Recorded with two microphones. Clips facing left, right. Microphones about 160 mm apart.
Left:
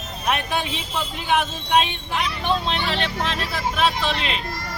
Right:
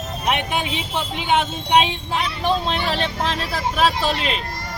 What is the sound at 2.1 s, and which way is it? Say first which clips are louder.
Speech: right 1 dB; 40° right (ahead or behind).